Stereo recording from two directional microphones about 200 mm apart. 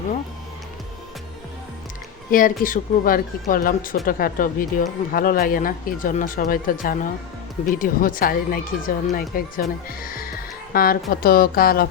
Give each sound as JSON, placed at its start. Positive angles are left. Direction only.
{"t": 2.3, "sound": "speech", "side_deg": 45}